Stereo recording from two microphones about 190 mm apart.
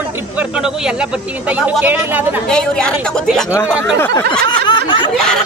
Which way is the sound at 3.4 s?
15° left (ahead or behind).